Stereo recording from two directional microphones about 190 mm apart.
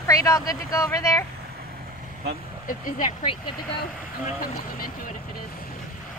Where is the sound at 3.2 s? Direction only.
25° left (ahead or behind).